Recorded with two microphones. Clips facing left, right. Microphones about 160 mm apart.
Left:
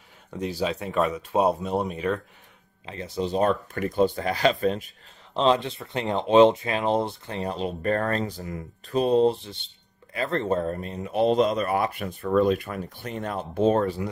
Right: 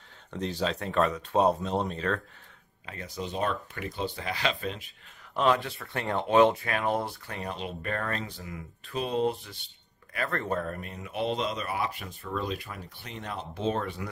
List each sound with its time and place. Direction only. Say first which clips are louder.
0.3 s speech: left 3 dB; 10° left (ahead or behind)
2.9 s speech: left 8 dB; 30° left (ahead or behind)
5.3 s speech: left 4 dB; 25° left (ahead or behind)